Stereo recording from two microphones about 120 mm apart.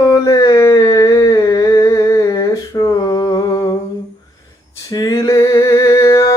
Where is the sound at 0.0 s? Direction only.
30° left (ahead or behind).